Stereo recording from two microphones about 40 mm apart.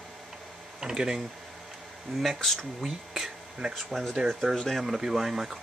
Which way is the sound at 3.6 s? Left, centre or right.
Centre.